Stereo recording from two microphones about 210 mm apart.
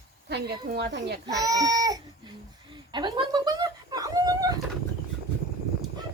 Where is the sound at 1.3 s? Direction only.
15° right (ahead or behind).